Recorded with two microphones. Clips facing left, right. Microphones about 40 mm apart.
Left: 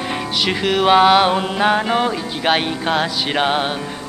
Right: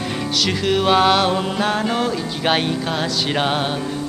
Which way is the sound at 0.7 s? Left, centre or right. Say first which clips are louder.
Left 3 dB; centre.